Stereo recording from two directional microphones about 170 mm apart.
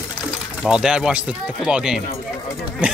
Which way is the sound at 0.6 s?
5° right (ahead or behind).